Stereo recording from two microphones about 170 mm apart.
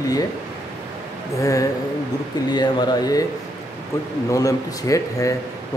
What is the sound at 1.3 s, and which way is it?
A man's voice, 20° left (ahead or behind).